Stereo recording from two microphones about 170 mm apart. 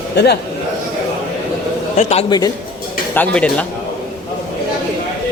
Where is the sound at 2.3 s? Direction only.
25° left (ahead or behind).